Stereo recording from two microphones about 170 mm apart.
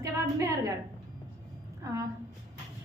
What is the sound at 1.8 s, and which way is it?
Speech, 20° right (ahead or behind).